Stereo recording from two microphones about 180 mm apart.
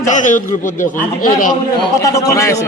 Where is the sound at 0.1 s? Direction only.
45° left (ahead or behind).